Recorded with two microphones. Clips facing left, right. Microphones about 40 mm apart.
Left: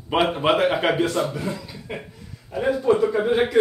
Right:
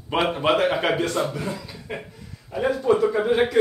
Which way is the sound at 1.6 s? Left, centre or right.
Centre.